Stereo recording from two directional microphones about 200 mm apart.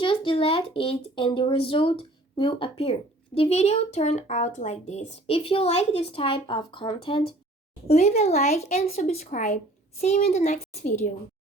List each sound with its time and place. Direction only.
0.0 s a child's voice: 25° left (ahead or behind)